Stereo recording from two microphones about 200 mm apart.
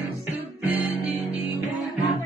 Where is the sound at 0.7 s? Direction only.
10° right (ahead or behind).